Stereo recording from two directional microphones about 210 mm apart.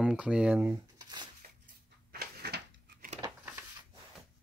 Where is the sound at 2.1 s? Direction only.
45° right (ahead or behind).